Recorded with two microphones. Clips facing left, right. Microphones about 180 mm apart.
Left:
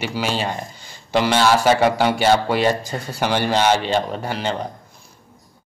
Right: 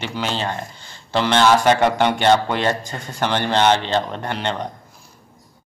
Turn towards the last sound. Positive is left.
turn(degrees=5)  # may be behind; listen again after turning